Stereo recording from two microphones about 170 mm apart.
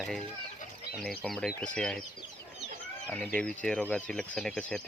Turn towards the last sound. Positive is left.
turn(degrees=5)  # may be behind; listen again after turning